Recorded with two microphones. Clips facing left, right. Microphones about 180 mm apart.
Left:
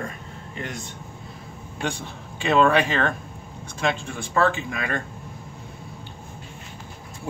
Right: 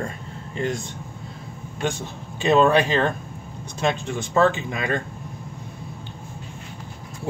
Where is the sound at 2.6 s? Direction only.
25° right (ahead or behind).